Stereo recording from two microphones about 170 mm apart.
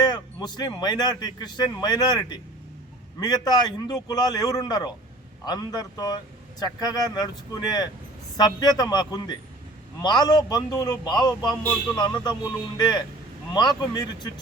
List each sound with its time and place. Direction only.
0.0 s a man's voice: 25° left (ahead or behind)